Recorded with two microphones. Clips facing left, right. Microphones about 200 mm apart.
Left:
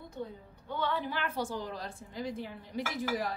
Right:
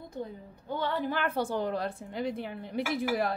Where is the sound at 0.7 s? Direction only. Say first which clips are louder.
Right 3 dB; 45° right (ahead or behind).